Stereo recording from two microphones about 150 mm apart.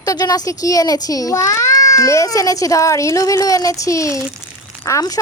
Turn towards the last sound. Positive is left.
turn(degrees=20)  # may be behind; listen again after turning